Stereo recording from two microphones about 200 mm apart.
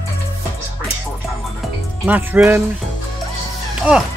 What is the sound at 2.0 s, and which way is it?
Speech, 10° right (ahead or behind).